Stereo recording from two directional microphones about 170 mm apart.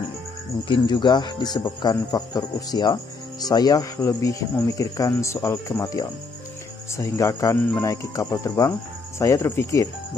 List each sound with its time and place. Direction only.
0.7 s speech: 25° left (ahead or behind)